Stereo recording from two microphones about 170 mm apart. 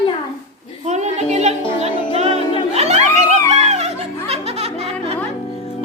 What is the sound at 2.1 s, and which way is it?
Music, 40° right (ahead or behind).